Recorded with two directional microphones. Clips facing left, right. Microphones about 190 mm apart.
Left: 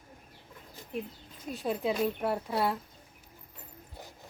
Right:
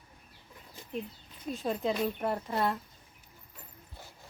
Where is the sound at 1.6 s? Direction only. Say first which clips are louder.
Left 1 dB; centre (ahead or behind).